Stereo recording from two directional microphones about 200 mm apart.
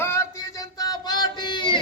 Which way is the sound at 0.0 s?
15° left (ahead or behind).